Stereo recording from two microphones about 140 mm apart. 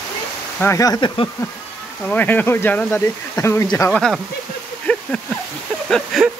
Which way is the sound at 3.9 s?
5° left (ahead or behind).